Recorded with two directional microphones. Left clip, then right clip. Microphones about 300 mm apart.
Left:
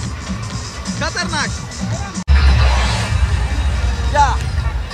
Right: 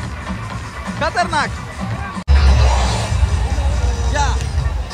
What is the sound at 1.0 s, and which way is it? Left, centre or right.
Music, centre.